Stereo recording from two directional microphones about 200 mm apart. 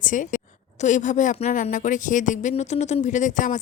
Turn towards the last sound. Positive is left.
turn(degrees=40)  # may be behind; listen again after turning